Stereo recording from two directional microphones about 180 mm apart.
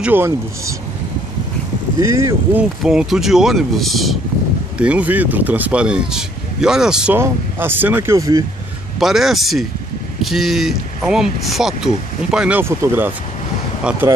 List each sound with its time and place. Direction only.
0.0 s speech: 10° right (ahead or behind)
2.0 s speech: 15° right (ahead or behind)
2.8 s speech: centre (ahead or behind); by 8.5 s 20° right (ahead or behind)
9.0 s speech: centre (ahead or behind)